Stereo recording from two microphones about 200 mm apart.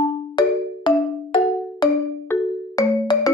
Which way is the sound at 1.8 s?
20° left (ahead or behind).